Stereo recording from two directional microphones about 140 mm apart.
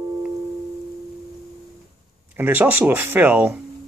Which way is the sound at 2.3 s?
15° right (ahead or behind).